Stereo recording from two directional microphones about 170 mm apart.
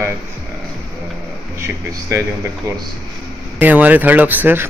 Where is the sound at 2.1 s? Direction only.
15° right (ahead or behind).